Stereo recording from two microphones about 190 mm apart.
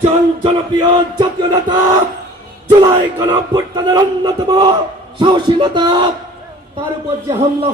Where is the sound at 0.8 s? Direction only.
25° right (ahead or behind).